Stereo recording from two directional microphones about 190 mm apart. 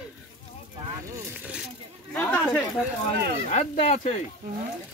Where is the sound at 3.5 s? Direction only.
35° left (ahead or behind).